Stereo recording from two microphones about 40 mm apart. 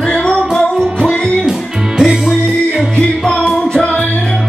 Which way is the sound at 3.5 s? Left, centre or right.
Left.